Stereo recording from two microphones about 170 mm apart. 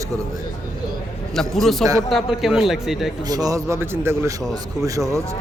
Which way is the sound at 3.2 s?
20° right (ahead or behind).